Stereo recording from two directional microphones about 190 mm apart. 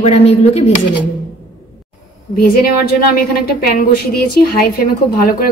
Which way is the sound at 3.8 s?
55° left (ahead or behind).